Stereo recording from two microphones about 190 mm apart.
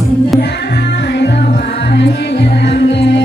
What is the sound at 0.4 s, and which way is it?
Music, 60° left (ahead or behind).